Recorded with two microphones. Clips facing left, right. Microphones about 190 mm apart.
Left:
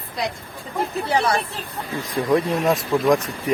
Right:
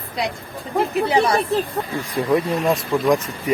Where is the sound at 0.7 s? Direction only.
15° right (ahead or behind).